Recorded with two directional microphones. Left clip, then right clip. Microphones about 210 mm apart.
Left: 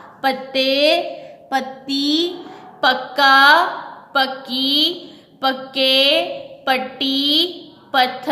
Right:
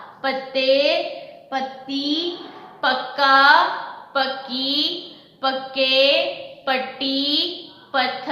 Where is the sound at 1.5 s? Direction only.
55° left (ahead or behind).